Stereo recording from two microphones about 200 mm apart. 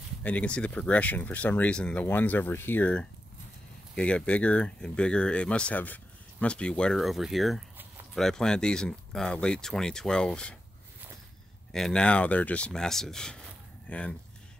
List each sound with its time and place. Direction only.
0.2 s speech: 5° left (ahead or behind)
11.7 s speech: 5° left (ahead or behind)